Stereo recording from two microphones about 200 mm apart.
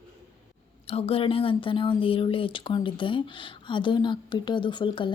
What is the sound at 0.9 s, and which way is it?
Speech, 30° left (ahead or behind).